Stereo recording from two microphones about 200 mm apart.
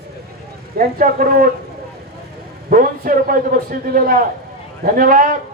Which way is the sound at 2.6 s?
45° right (ahead or behind).